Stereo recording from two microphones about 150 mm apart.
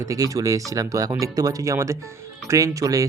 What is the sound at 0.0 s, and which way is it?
Speech, 20° right (ahead or behind).